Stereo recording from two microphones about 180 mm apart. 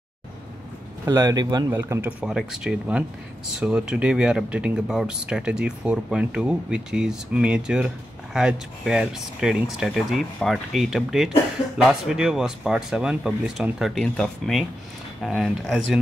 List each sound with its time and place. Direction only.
1.0 s speech: 20° right (ahead or behind)
1.7 s speech: 10° right (ahead or behind)